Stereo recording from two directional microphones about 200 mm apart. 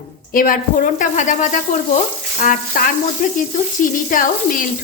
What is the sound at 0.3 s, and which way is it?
A woman's voice, 40° left (ahead or behind).